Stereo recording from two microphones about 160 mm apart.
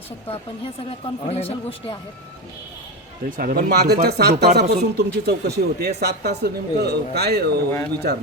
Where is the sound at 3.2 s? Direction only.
65° right (ahead or behind).